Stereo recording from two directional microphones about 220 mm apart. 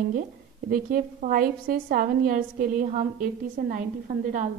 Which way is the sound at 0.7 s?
40° right (ahead or behind).